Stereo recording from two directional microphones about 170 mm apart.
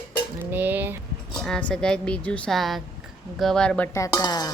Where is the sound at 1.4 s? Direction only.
5° left (ahead or behind).